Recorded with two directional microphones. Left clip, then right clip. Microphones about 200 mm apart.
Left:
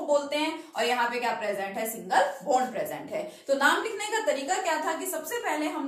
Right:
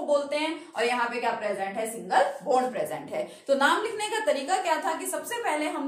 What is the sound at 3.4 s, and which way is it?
A woman's voice, 35° right (ahead or behind).